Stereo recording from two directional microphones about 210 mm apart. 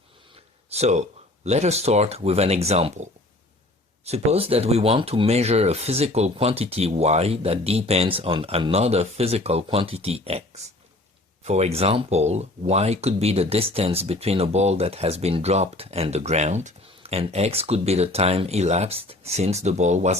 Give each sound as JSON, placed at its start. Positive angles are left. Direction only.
{"t": 0.7, "sound": "speech", "side_deg": -30}